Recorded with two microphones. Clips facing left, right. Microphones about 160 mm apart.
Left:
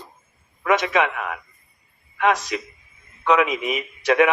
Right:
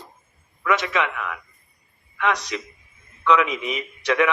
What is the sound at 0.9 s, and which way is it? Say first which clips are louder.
A man's voice: left 3 dB; 45° left (ahead or behind).